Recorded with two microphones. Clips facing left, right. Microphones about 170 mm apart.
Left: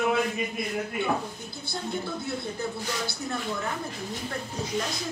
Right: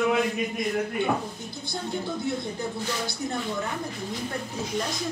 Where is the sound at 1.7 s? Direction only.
20° right (ahead or behind).